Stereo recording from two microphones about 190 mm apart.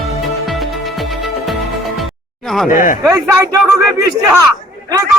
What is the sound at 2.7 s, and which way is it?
Speech, 45° left (ahead or behind).